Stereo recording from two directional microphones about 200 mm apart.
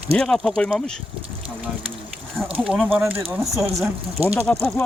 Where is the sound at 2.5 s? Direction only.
5° right (ahead or behind).